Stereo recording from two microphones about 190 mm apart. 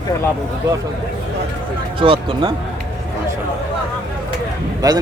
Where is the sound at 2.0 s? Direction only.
25° right (ahead or behind).